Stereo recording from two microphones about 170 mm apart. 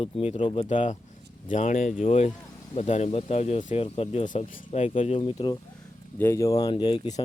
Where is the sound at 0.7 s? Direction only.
45° left (ahead or behind).